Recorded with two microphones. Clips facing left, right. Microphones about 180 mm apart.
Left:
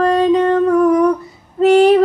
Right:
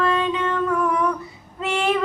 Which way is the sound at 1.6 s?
40° left (ahead or behind).